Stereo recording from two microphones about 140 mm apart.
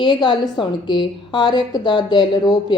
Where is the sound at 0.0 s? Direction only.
35° left (ahead or behind).